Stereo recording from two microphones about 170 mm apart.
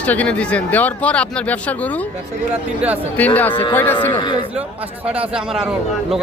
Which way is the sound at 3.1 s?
10° left (ahead or behind).